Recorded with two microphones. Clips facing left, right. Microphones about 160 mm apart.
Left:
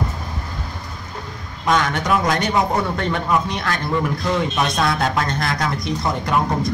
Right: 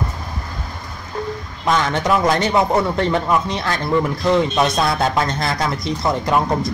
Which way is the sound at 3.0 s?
25° right (ahead or behind).